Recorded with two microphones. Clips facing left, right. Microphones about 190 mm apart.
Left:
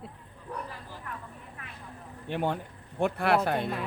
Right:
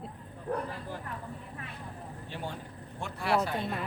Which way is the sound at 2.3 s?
60° left (ahead or behind).